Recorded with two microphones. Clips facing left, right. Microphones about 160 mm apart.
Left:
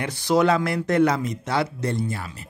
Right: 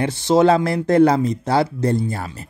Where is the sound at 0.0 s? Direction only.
25° right (ahead or behind).